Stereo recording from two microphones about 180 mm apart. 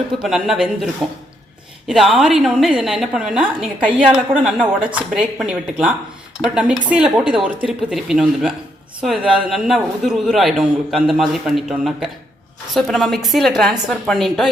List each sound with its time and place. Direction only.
0.2 s a man's voice: 5° right (ahead or behind)
1.9 s a man's voice: centre (ahead or behind)